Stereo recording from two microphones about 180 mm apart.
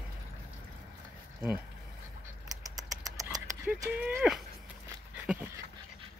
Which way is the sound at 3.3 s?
Centre (ahead or behind).